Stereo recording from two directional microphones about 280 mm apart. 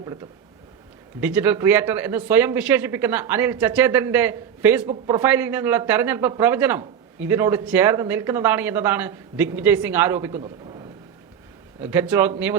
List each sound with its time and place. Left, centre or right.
1.2 s speech: centre
11.8 s speech: centre